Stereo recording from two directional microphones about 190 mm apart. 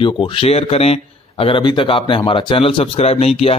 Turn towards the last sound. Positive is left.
turn(degrees=30)  # may be behind; listen again after turning